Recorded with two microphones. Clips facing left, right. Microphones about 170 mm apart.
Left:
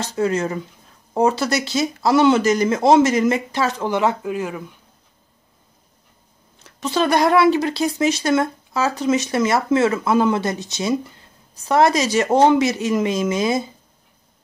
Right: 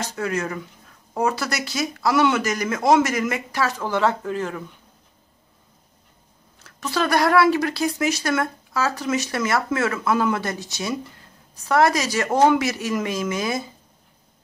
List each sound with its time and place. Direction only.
0.0 s speech: 25° left (ahead or behind); by 4.6 s 10° left (ahead or behind)
6.6 s speech: 20° left (ahead or behind)